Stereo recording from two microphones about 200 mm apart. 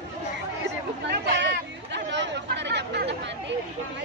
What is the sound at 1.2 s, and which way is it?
Chatter, 60° right (ahead or behind).